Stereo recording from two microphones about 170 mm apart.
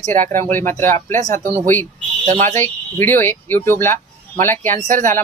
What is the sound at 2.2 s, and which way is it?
Speech, 45° right (ahead or behind).